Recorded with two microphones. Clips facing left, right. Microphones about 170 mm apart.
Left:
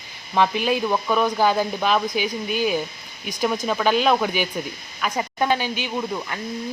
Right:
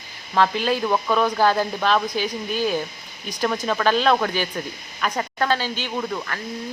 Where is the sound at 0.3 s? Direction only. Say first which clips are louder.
Even; 15° left (ahead or behind).